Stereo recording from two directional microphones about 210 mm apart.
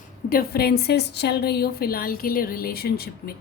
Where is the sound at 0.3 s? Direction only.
45° left (ahead or behind).